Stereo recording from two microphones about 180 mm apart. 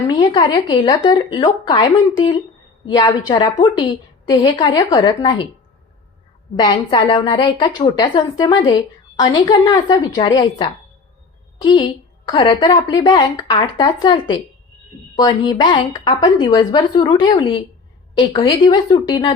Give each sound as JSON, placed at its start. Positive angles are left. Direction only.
{"t": 0.1, "sound": "a woman's voice", "side_deg": 20}
{"t": 6.6, "sound": "a woman's voice", "side_deg": 25}